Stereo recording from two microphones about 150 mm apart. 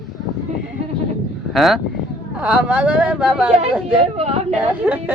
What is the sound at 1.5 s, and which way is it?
Speech, centre (ahead or behind).